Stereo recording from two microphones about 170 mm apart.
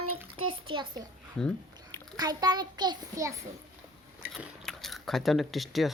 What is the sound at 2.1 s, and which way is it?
A child's voice, 25° right (ahead or behind).